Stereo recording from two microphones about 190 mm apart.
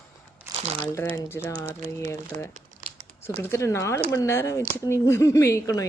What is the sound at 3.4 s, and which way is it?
A woman's voice, 15° left (ahead or behind).